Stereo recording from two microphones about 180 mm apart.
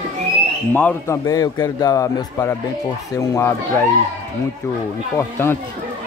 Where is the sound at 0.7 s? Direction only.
10° left (ahead or behind).